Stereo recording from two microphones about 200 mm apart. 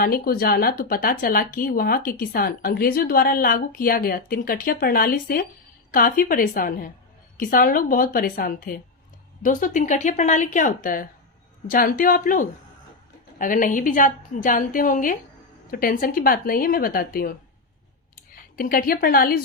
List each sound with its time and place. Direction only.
0.0 s a woman's voice: 50° left (ahead or behind)
18.5 s speech: 45° left (ahead or behind)